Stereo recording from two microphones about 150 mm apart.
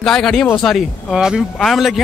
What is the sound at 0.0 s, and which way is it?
Speech, 5° left (ahead or behind).